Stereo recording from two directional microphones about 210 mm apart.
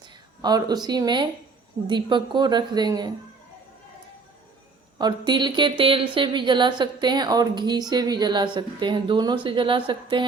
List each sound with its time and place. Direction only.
0.0 s speech: 20° right (ahead or behind)
4.9 s speech: 20° right (ahead or behind)